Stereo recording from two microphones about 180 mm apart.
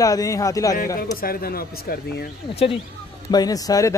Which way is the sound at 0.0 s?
20° left (ahead or behind).